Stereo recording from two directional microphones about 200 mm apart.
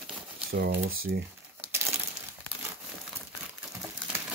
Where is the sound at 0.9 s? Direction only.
90° right.